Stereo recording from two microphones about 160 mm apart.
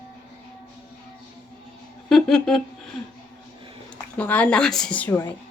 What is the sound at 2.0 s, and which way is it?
Speech, centre (ahead or behind).